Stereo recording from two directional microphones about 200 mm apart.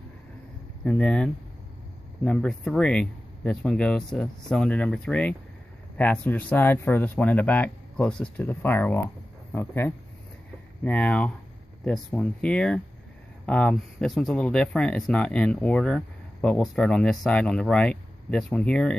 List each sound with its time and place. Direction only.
0.8 s speech: 5° left (ahead or behind)